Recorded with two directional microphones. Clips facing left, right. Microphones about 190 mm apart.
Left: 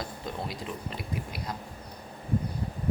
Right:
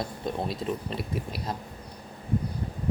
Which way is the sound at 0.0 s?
25° right (ahead or behind).